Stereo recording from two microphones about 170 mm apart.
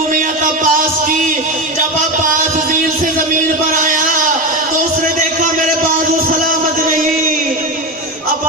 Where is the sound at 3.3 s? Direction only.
50° right (ahead or behind).